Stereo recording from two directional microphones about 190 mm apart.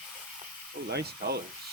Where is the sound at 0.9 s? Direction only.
55° right (ahead or behind).